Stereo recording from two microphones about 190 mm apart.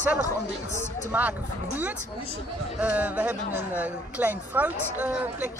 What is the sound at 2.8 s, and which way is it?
Speech, 10° right (ahead or behind).